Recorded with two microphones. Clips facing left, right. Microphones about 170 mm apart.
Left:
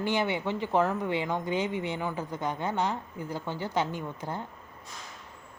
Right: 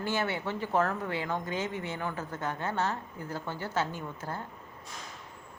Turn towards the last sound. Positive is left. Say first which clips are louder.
# left 3 dB
turn(degrees=15)  # may be behind; listen again after turning